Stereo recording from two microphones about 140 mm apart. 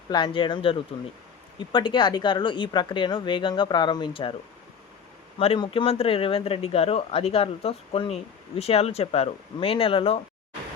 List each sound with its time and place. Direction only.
0.1 s speech: 35° left (ahead or behind)
5.4 s speech: 40° left (ahead or behind)